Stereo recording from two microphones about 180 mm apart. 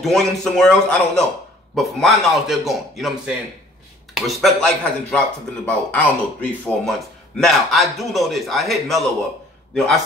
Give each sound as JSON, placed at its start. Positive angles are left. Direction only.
{"t": 0.0, "sound": "a man's voice", "side_deg": 0}